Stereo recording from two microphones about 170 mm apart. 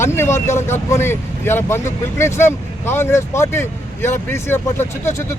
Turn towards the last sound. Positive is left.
turn(degrees=15)  # may be behind; listen again after turning